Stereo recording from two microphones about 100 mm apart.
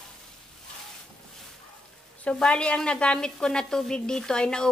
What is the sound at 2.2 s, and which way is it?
A woman's voice, 10° left (ahead or behind).